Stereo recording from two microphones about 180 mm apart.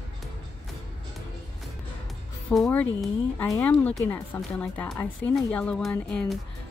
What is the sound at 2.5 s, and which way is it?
Speech, 5° left (ahead or behind).